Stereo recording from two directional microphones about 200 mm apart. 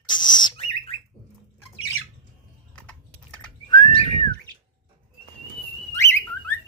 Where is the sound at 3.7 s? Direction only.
20° left (ahead or behind).